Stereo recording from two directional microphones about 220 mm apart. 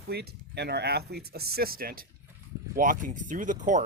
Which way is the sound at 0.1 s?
50° right (ahead or behind).